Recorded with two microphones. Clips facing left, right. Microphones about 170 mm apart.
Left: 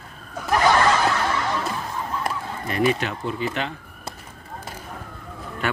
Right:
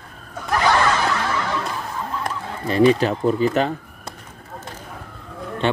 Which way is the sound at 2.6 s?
30° right (ahead or behind).